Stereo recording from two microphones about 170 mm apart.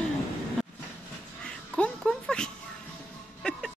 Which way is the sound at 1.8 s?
5° left (ahead or behind).